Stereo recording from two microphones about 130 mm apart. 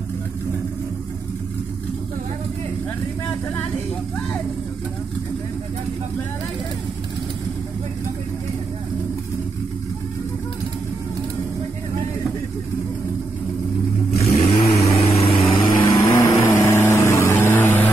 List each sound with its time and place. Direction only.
14.4 s vehicle: 50° left (ahead or behind)
15.6 s vehicle: 25° left (ahead or behind)